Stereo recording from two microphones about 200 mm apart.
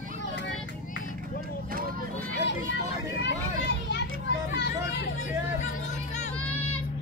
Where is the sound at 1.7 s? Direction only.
45° right (ahead or behind).